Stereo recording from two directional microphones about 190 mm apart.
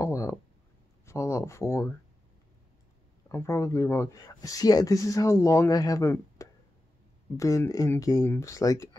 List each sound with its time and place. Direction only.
0.0 s a sound: 15° left (ahead or behind)
1.0 s speech: 15° left (ahead or behind)
3.3 s speech: 15° left (ahead or behind)